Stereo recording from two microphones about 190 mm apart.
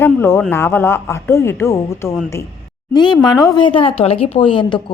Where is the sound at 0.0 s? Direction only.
10° left (ahead or behind).